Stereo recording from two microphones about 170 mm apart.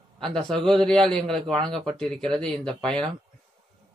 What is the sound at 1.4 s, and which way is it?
Speech, 30° right (ahead or behind).